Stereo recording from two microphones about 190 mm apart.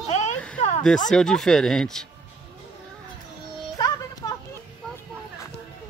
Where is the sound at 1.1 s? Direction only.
5° left (ahead or behind).